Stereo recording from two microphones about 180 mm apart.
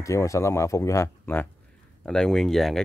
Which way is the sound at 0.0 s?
15° left (ahead or behind).